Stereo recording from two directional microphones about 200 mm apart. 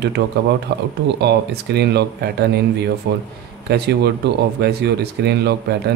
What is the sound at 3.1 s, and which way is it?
A man's voice, 55° right (ahead or behind).